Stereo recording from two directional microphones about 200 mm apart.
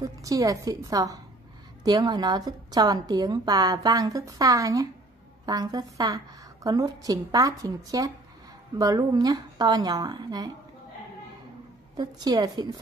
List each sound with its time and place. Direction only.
0.0 s a woman's voice: 15° right (ahead or behind)
12.0 s a woman's voice: 20° right (ahead or behind)